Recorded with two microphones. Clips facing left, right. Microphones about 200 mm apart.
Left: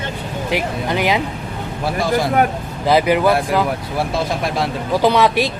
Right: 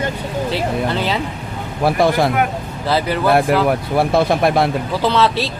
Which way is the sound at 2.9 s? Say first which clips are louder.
Left 2 dB; 15° left (ahead or behind).